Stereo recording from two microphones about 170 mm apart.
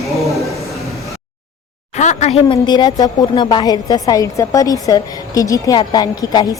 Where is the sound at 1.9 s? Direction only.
45° left (ahead or behind).